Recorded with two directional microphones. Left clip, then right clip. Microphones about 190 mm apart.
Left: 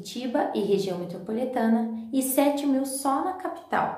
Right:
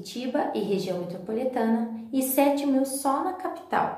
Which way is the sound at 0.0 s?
15° left (ahead or behind).